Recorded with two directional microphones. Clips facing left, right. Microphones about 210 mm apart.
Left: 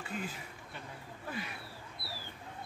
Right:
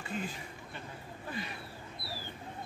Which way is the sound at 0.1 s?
5° left (ahead or behind).